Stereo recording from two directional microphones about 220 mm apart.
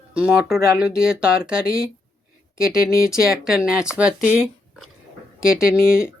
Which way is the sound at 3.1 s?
5° right (ahead or behind).